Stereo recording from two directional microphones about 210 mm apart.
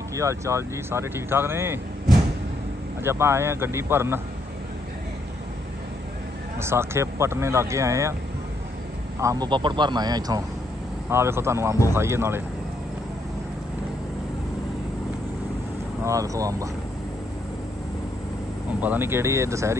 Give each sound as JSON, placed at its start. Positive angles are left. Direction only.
{"t": 0.1, "sound": "speech", "side_deg": -15}
{"t": 3.0, "sound": "speech", "side_deg": -10}
{"t": 6.6, "sound": "speech", "side_deg": -10}
{"t": 9.2, "sound": "speech", "side_deg": -15}
{"t": 16.0, "sound": "speech", "side_deg": -15}
{"t": 18.8, "sound": "speech", "side_deg": -10}